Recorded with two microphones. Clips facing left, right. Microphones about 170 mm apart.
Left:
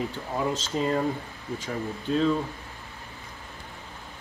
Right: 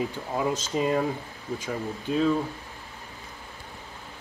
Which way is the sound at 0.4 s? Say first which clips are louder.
Right 1 dB; 5° right (ahead or behind).